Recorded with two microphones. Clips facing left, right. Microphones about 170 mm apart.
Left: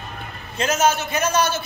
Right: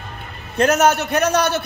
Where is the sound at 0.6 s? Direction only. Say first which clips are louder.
Right 4 dB; 65° right (ahead or behind).